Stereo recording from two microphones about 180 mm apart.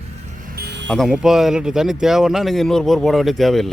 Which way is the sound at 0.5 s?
65° right (ahead or behind).